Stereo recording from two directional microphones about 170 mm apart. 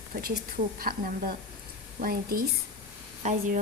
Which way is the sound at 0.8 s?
60° right (ahead or behind).